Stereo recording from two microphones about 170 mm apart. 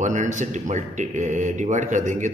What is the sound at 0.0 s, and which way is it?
Speech, 45° right (ahead or behind).